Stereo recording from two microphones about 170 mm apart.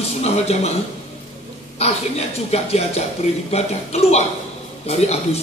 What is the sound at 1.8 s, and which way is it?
A man's voice, 40° left (ahead or behind).